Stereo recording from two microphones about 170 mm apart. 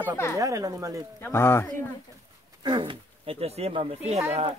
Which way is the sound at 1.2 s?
15° left (ahead or behind).